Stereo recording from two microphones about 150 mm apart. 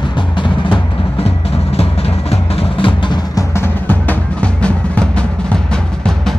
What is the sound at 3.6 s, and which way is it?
Music, 10° left (ahead or behind).